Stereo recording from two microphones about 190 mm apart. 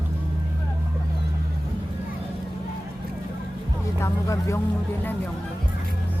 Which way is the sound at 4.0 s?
15° left (ahead or behind).